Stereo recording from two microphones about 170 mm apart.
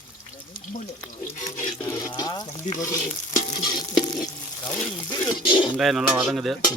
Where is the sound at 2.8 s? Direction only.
20° left (ahead or behind).